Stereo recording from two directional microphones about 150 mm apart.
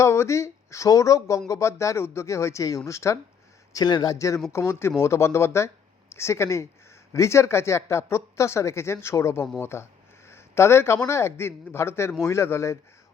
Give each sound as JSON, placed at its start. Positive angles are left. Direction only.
{"t": 0.0, "sound": "speech", "side_deg": 20}